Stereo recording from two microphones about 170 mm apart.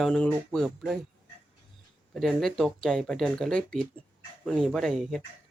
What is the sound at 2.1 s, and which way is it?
Speech, centre (ahead or behind).